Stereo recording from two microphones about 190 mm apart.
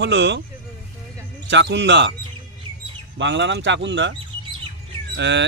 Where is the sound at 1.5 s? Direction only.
70° right (ahead or behind).